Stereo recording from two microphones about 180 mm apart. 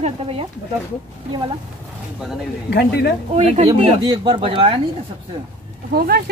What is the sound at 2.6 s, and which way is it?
Speech, 70° left (ahead or behind).